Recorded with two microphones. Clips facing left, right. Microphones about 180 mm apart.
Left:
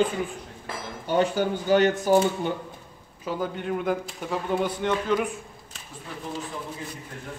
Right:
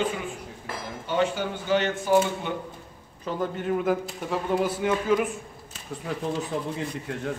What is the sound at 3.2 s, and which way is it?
A man's voice, centre (ahead or behind).